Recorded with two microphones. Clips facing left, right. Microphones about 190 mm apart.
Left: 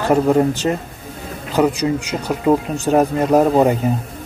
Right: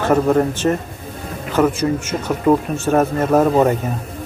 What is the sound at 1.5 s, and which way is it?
Speech, 15° left (ahead or behind).